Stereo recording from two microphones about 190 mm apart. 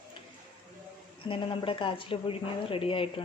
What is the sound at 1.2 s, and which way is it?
A woman's voice, 30° left (ahead or behind).